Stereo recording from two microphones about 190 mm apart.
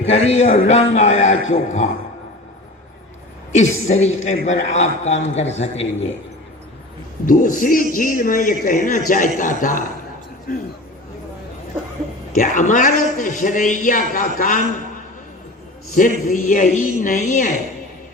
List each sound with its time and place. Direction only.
0.0 s a man's voice: 35° left (ahead or behind)
3.5 s a man's voice: 35° left (ahead or behind)
7.3 s a man's voice: 45° left (ahead or behind)
12.3 s a man's voice: 40° left (ahead or behind)
16.0 s a man's voice: 45° left (ahead or behind)